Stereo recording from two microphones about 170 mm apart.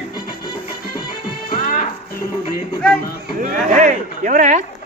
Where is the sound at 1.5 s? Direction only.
50° left (ahead or behind).